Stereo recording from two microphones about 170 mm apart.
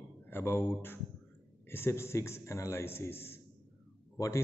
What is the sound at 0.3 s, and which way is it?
A man's voice, 15° left (ahead or behind).